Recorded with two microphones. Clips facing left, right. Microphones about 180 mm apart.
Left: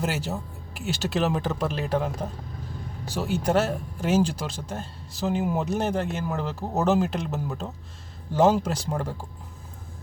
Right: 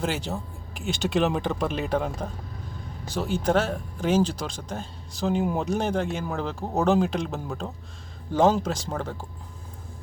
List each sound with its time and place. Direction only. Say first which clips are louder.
0.0 s speech: even; 5° left (ahead or behind)